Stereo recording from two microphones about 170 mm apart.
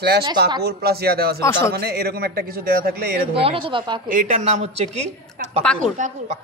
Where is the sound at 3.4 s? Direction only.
35° right (ahead or behind).